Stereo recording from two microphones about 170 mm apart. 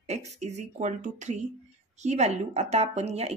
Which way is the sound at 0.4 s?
40° right (ahead or behind).